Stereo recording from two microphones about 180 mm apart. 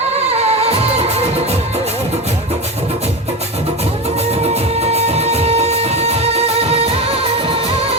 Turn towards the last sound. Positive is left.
turn(degrees=-35)  # may be behind; listen again after turning